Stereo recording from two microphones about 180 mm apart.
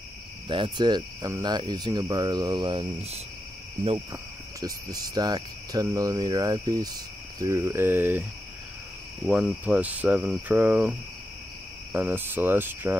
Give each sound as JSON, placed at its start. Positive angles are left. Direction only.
{"t": 0.5, "sound": "cricket", "side_deg": -25}
{"t": 4.1, "sound": "cricket", "side_deg": -20}